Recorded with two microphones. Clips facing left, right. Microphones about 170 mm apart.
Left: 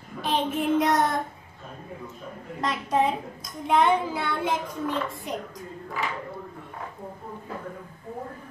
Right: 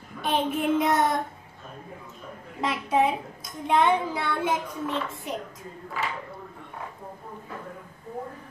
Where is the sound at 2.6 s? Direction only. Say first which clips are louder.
Right 1 dB; 5° right (ahead or behind).